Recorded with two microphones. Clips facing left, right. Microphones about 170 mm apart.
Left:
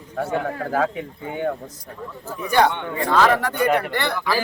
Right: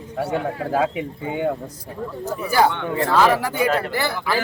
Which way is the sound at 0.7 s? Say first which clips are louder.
Right 2 dB; 15° right (ahead or behind).